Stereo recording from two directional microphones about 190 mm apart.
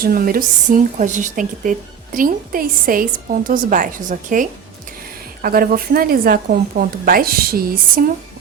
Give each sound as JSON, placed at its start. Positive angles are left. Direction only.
{"t": 0.0, "sound": "speech", "side_deg": -50}